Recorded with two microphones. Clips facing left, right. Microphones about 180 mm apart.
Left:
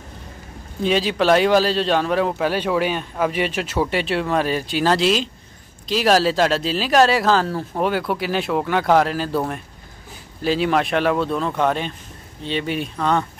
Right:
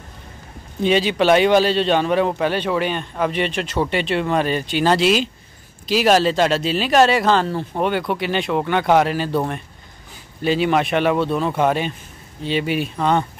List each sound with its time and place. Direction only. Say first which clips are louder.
0.8 s a man's voice: right 2 dB; centre (ahead or behind)